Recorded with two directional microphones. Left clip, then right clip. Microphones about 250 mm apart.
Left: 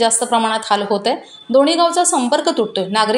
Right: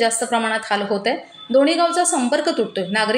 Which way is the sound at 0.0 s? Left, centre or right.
Centre.